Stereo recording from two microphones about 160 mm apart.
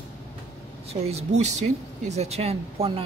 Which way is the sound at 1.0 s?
45° right (ahead or behind).